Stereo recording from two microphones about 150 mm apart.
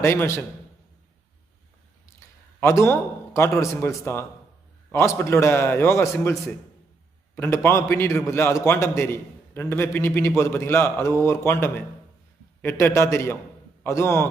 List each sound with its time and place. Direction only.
0.0 s a man's voice: 15° left (ahead or behind)
2.6 s a man's voice: 20° left (ahead or behind)